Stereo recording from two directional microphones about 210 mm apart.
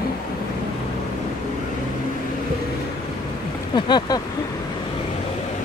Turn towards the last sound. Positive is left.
turn(degrees=20)  # may be behind; listen again after turning